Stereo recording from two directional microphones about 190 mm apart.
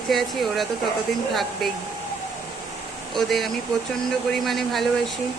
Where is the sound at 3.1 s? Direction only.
Centre (ahead or behind).